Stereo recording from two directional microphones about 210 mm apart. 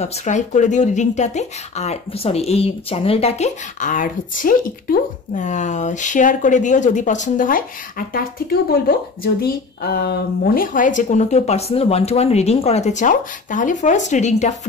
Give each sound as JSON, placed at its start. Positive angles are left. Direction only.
{"t": 0.0, "sound": "speech", "side_deg": 35}